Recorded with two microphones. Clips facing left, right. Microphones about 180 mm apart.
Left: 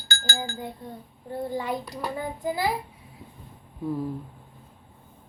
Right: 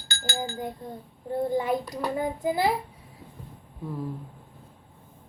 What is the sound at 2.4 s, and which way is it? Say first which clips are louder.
Child singing: right 2 dB; 25° right (ahead or behind).